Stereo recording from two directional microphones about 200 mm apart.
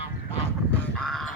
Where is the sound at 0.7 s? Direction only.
5° left (ahead or behind).